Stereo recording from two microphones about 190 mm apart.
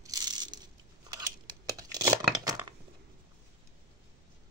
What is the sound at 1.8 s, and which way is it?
Tearing, 20° right (ahead or behind).